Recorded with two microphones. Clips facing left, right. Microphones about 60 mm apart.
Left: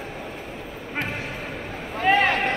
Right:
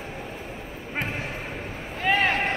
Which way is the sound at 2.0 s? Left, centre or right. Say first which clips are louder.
Left 3 dB; left.